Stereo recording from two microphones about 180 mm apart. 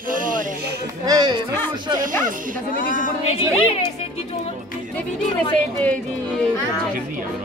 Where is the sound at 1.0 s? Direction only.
20° right (ahead or behind).